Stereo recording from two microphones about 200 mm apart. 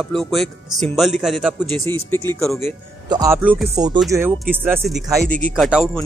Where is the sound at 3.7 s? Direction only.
20° right (ahead or behind).